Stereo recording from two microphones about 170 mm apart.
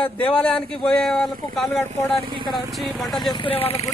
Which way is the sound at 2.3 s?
30° right (ahead or behind).